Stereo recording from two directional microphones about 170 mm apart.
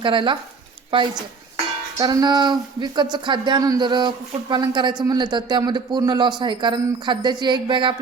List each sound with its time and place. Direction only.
0.0 s speech: 30° right (ahead or behind)